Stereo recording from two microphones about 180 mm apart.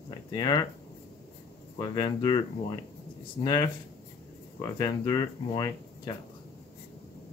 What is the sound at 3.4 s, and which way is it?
Speech, 20° left (ahead or behind).